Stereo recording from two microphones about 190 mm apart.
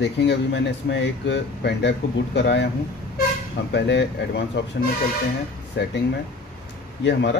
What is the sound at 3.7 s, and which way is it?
Speech, 65° left (ahead or behind).